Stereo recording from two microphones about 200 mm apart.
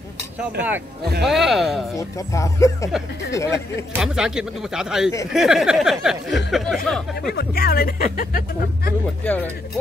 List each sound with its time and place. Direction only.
0.6 s speech: 10° right (ahead or behind)
2.0 s speech: 15° left (ahead or behind)
4.0 s speech: 5° right (ahead or behind)
7.3 s speech: 50° left (ahead or behind)
9.2 s speech: 10° left (ahead or behind)